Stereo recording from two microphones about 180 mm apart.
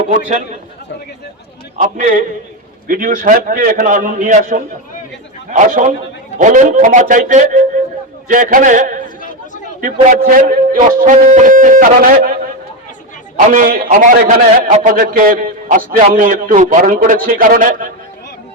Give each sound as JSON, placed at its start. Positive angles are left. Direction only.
{"t": 1.8, "sound": "a man's voice", "side_deg": -45}